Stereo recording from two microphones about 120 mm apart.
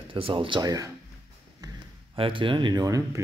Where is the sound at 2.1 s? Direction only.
45° right (ahead or behind); by 3.2 s 30° right (ahead or behind).